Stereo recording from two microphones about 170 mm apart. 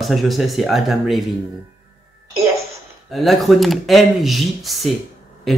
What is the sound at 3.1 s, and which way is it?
Speech, centre (ahead or behind).